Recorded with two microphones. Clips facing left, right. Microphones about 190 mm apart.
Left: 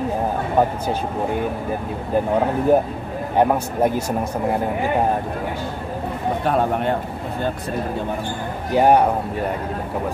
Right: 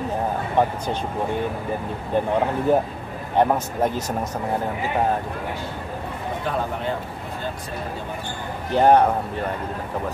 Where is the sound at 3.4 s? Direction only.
10° left (ahead or behind).